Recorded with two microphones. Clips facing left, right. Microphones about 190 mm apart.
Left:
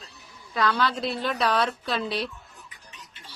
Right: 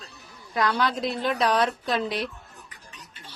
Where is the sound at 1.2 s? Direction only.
20° right (ahead or behind).